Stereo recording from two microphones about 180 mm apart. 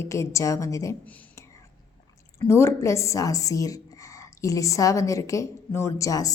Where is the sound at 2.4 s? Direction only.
15° left (ahead or behind).